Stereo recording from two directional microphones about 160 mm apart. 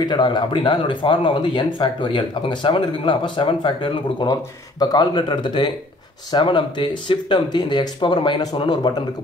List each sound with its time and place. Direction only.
0.0 s speech: 30° left (ahead or behind)